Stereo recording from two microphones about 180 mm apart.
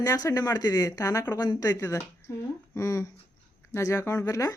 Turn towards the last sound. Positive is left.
turn(degrees=20)  # may be behind; listen again after turning